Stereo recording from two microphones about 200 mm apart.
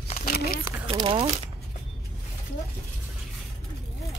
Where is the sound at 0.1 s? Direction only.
45° left (ahead or behind).